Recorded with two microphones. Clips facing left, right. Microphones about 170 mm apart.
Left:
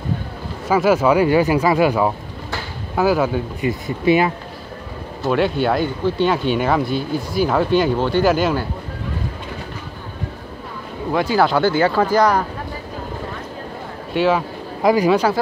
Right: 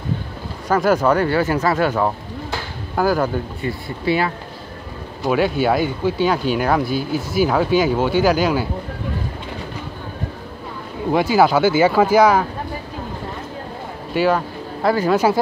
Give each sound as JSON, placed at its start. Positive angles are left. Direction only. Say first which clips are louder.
{"t": 0.7, "sound": "speech", "louder": "left 1 dB", "side_deg": 5}
{"t": 3.8, "sound": "speech", "louder": "left 4 dB", "side_deg": 20}
{"t": 5.2, "sound": "speech", "louder": "even", "side_deg": -5}
{"t": 11.1, "sound": "speech", "louder": "right 2 dB", "side_deg": -5}
{"t": 14.1, "sound": "speech", "louder": "even", "side_deg": 0}
{"t": 14.8, "sound": "speech", "louder": "left 3 dB", "side_deg": 15}
{"t": 15.0, "sound": "speech", "louder": "even", "side_deg": -5}